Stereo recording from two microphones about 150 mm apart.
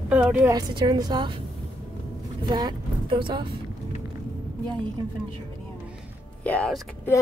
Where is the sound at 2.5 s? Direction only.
30° right (ahead or behind).